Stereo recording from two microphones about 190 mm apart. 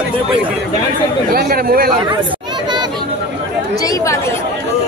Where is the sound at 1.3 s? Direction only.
55° right (ahead or behind).